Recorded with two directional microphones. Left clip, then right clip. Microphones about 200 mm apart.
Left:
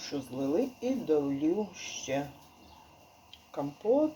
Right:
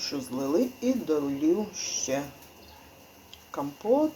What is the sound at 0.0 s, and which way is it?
Speech, 15° left (ahead or behind).